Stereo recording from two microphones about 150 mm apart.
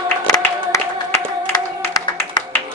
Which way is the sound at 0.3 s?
20° left (ahead or behind).